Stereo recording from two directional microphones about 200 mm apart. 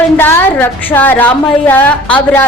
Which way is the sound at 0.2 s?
10° left (ahead or behind).